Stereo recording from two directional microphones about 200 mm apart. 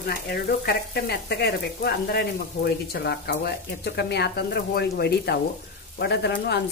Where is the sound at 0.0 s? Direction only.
50° left (ahead or behind).